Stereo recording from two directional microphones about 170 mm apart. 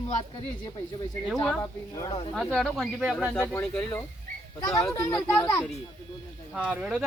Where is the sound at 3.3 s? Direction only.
10° left (ahead or behind).